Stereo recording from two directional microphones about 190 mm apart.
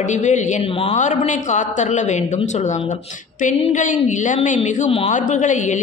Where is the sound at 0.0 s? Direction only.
40° left (ahead or behind).